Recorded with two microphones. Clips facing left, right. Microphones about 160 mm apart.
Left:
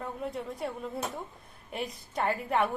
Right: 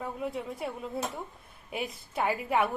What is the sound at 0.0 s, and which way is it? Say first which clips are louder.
Speech: right 1 dB; 5° right (ahead or behind).